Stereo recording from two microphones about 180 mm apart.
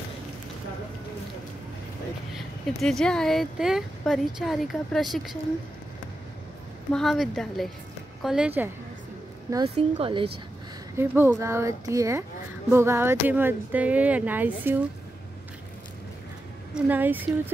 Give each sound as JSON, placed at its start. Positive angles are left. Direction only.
{"t": 2.3, "sound": "speech", "side_deg": 0}
{"t": 6.9, "sound": "speech", "side_deg": 0}
{"t": 9.8, "sound": "speech", "side_deg": -35}
{"t": 11.0, "sound": "speech", "side_deg": -15}
{"t": 16.7, "sound": "speech", "side_deg": -10}